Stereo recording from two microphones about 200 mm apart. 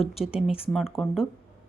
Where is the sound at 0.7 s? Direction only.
Centre (ahead or behind).